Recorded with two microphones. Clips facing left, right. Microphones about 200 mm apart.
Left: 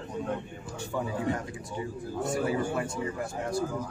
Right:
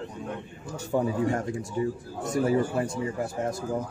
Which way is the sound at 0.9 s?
40° right (ahead or behind).